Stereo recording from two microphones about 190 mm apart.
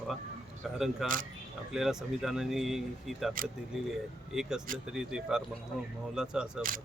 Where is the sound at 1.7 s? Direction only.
5° right (ahead or behind).